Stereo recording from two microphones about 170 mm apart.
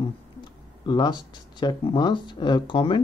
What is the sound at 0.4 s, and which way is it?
Speech, 25° left (ahead or behind).